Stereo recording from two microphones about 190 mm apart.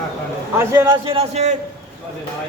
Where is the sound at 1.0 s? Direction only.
30° right (ahead or behind).